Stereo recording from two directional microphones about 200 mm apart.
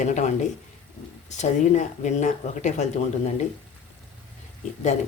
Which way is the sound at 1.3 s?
35° left (ahead or behind).